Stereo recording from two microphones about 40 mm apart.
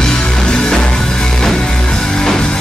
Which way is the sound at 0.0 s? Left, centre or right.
Centre.